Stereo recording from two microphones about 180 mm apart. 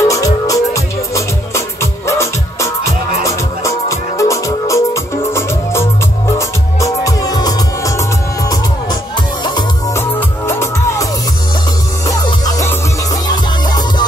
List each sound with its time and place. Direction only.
0.0 s music: 20° left (ahead or behind)
12.1 s music: 20° left (ahead or behind)